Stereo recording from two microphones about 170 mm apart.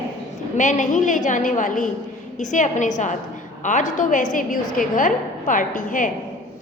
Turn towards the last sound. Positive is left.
turn(degrees=50)  # may be behind; listen again after turning